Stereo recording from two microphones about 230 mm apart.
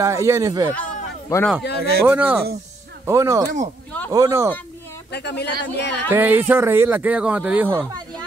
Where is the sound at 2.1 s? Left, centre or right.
Centre.